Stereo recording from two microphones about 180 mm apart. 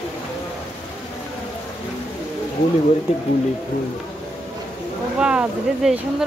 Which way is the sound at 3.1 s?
35° left (ahead or behind).